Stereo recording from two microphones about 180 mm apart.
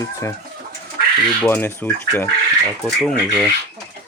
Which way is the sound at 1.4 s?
10° left (ahead or behind).